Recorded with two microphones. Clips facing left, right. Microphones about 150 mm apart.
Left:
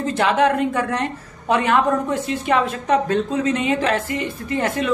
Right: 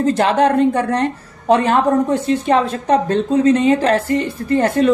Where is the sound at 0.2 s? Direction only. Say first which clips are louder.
Right 2 dB; 35° right (ahead or behind).